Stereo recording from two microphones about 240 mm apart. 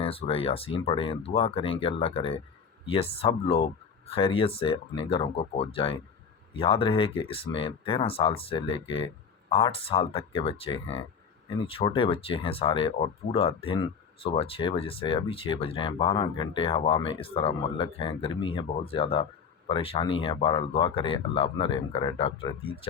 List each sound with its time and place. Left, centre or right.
0.0 s speech: left